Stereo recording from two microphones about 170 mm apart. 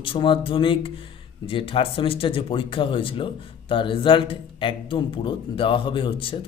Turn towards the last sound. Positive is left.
turn(degrees=30)  # may be behind; listen again after turning